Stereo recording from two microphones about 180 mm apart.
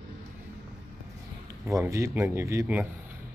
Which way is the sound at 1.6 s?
15° right (ahead or behind).